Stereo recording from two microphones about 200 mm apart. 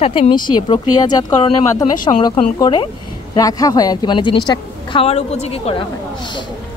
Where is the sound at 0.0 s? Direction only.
30° left (ahead or behind).